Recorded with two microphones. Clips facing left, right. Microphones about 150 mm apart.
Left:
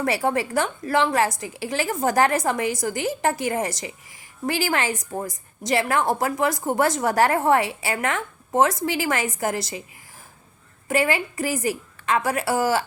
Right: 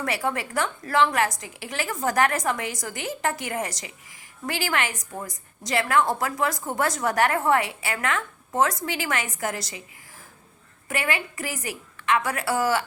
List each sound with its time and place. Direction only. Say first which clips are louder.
0.0 s a woman's voice: left 5 dB; 30° left (ahead or behind)
10.8 s a woman's voice: left 6 dB; 30° left (ahead or behind)